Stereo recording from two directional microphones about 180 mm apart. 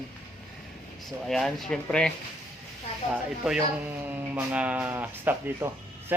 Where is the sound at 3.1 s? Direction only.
5° right (ahead or behind).